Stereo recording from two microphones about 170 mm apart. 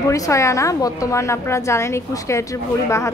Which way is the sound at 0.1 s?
20° left (ahead or behind).